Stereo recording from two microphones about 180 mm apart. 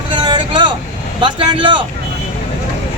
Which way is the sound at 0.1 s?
25° right (ahead or behind).